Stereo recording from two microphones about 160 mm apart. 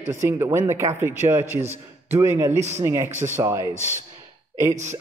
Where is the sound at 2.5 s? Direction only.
45° right (ahead or behind).